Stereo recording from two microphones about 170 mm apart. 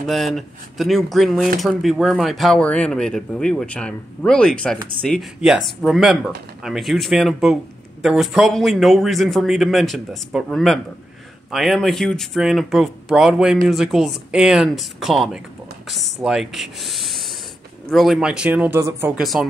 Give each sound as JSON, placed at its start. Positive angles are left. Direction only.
{"t": 0.0, "sound": "speech", "side_deg": 0}